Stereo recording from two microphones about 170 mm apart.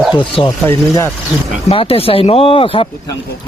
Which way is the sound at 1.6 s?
35° left (ahead or behind).